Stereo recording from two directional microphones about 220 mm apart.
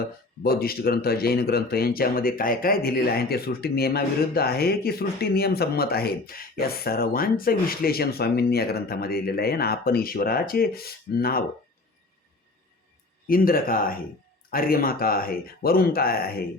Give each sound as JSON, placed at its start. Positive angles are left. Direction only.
{"t": 0.4, "sound": "speech", "side_deg": 45}
{"t": 13.2, "sound": "speech", "side_deg": 40}